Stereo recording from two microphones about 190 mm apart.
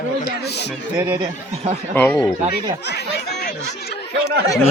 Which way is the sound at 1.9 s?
10° left (ahead or behind).